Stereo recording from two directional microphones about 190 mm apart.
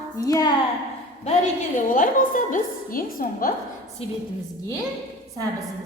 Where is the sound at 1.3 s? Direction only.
40° left (ahead or behind).